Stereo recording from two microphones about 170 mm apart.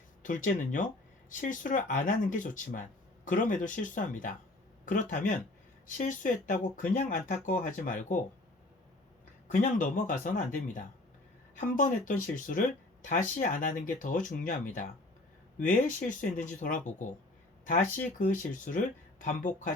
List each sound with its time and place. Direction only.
0.2 s speech: 50° left (ahead or behind)
9.5 s speech: 50° left (ahead or behind)
18.2 s speech: 50° left (ahead or behind)